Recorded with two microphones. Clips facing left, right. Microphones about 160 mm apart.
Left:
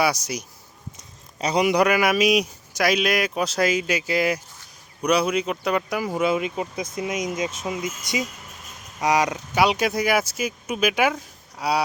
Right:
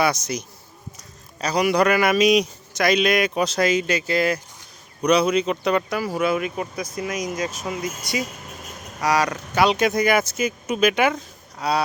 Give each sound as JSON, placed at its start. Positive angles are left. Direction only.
{"t": 0.0, "sound": "a man's voice", "side_deg": 10}
{"t": 1.4, "sound": "a man's voice", "side_deg": 20}
{"t": 6.0, "sound": "a man's voice", "side_deg": 20}